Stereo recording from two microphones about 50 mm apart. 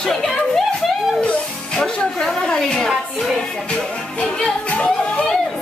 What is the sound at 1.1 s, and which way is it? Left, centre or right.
Music, centre.